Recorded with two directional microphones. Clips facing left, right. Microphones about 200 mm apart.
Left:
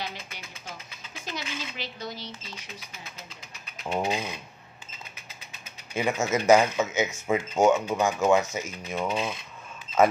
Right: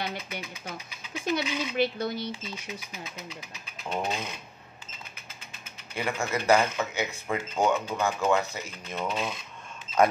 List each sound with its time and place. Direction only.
0.0 s a sound: 60° right (ahead or behind)
3.9 s speech: 10° left (ahead or behind)
5.9 s a man's voice: 20° left (ahead or behind)